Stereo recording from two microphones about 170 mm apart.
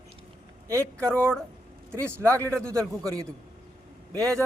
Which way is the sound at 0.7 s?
15° right (ahead or behind).